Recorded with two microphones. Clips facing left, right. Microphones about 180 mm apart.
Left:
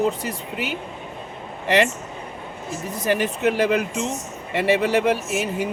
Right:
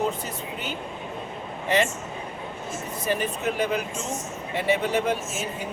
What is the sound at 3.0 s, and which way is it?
Speech, 80° left.